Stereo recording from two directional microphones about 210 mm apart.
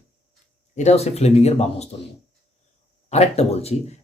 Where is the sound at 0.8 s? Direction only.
30° left (ahead or behind).